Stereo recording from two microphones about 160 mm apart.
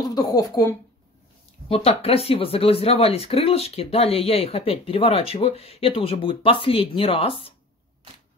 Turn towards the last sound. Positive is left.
turn(degrees=35)  # may be behind; listen again after turning